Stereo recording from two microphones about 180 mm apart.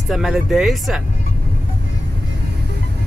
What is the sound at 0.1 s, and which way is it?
Speech, centre (ahead or behind).